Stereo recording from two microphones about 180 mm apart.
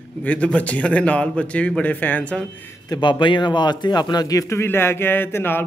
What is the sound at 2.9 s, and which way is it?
A man's voice, 25° left (ahead or behind).